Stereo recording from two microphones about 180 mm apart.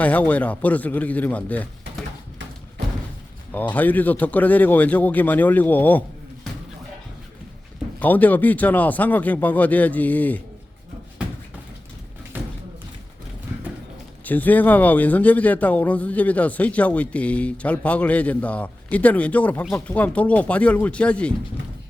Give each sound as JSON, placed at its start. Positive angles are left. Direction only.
{"t": 0.0, "sound": "a man's voice", "side_deg": 10}
{"t": 3.5, "sound": "a man's voice", "side_deg": 10}
{"t": 7.9, "sound": "a man's voice", "side_deg": 10}
{"t": 12.3, "sound": "music", "side_deg": -10}
{"t": 14.3, "sound": "a man's voice", "side_deg": 10}